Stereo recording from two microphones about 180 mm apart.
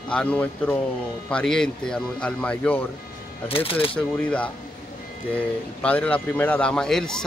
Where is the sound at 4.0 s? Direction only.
5° left (ahead or behind).